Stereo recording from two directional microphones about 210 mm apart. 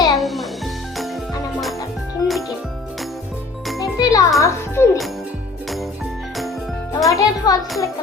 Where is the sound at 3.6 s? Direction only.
Centre (ahead or behind).